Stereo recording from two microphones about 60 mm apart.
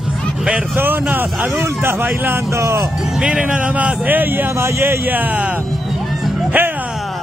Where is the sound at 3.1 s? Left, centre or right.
Centre; by 5.2 s right.